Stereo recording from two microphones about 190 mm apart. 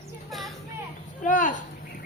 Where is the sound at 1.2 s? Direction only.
40° left (ahead or behind).